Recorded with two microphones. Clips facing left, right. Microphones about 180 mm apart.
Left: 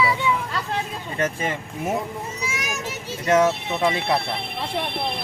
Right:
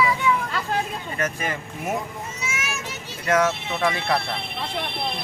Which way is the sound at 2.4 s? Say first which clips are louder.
Left 1 dB; 35° left (ahead or behind).